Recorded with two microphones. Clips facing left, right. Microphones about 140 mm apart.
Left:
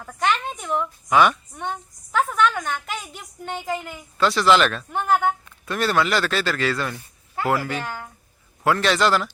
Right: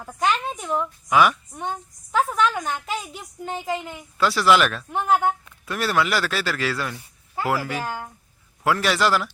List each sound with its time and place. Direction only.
0.6 s speech: centre (ahead or behind)
6.9 s a sound: 15° right (ahead or behind)
7.4 s speech: 5° right (ahead or behind)
7.9 s speech: 25° right (ahead or behind)
8.6 s a man's voice: 5° right (ahead or behind)